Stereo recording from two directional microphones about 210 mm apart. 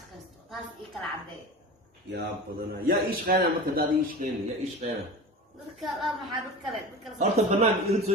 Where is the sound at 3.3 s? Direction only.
45° right (ahead or behind).